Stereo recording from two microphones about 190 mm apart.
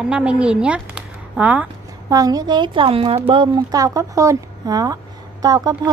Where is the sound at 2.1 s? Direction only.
20° right (ahead or behind).